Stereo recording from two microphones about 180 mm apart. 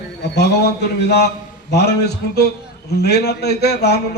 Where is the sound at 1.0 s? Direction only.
65° left (ahead or behind).